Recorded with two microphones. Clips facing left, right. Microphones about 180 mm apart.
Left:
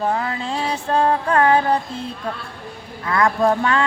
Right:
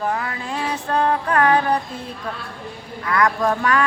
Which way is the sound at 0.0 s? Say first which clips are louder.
Left 3 dB; 25° left (ahead or behind).